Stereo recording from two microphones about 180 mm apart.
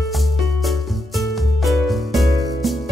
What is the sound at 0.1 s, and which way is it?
Music, centre (ahead or behind).